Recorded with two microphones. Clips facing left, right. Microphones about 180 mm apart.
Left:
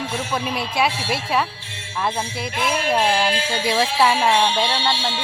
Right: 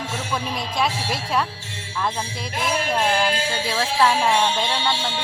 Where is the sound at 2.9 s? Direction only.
10° left (ahead or behind).